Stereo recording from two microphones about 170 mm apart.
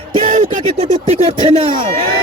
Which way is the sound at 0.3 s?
45° right (ahead or behind).